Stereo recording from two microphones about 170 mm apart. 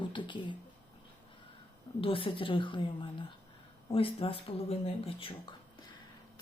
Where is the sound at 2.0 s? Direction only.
30° left (ahead or behind).